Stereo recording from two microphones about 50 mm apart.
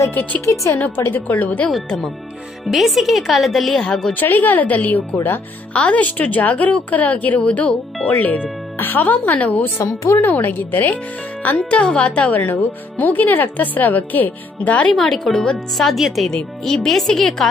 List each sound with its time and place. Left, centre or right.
0.1 s a woman's voice: left
1.9 s speech: centre
2.7 s a woman's voice: centre
3.8 s speech: centre
4.1 s a woman's voice: left
5.7 s a woman's voice: left
9.8 s speech: left
10.3 s a woman's voice: left
11.7 s a woman's voice: left
14.9 s a woman's voice: centre
16.3 s speech: centre